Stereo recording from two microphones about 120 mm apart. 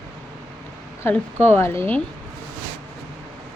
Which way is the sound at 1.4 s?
20° left (ahead or behind).